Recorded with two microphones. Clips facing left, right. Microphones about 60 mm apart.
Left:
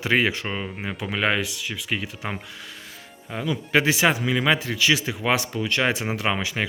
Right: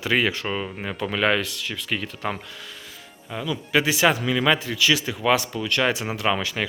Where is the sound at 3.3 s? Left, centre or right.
Left.